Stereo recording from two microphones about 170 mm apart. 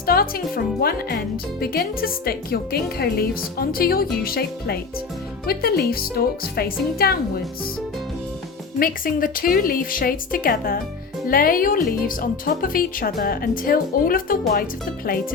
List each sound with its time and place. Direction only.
0.0 s speech: 60° left (ahead or behind)
8.8 s speech: 60° left (ahead or behind)